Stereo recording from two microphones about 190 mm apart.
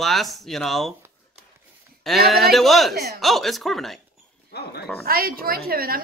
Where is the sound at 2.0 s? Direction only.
Centre (ahead or behind).